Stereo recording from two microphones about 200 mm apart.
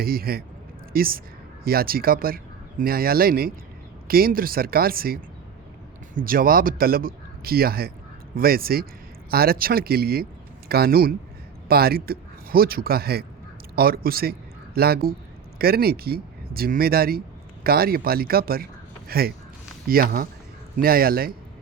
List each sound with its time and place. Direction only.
0.0 s speech: 50° right (ahead or behind)
6.2 s speech: 45° right (ahead or behind)